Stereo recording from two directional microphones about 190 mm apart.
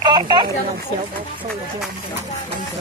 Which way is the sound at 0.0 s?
25° right (ahead or behind).